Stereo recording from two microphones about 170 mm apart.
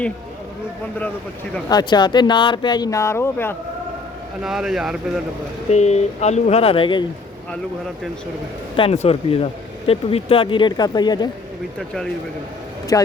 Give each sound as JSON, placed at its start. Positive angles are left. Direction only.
{"t": 1.7, "sound": "speech", "side_deg": 25}
{"t": 4.4, "sound": "speech", "side_deg": 0}
{"t": 5.7, "sound": "speech", "side_deg": 40}
{"t": 8.7, "sound": "speech", "side_deg": 35}
{"t": 12.9, "sound": "speech", "side_deg": 20}